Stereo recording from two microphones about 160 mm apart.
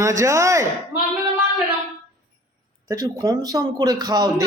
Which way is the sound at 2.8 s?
20° right (ahead or behind).